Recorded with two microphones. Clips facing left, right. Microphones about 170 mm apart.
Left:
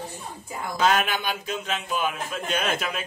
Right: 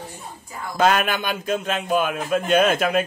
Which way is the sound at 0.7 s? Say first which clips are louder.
Right 3 dB; 55° right (ahead or behind).